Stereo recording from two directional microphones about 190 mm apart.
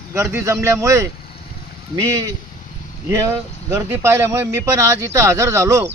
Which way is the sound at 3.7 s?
15° right (ahead or behind).